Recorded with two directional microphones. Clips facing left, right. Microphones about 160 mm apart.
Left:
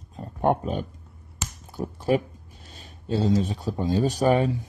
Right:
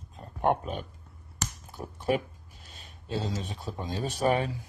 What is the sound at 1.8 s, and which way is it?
Speech, 25° left (ahead or behind).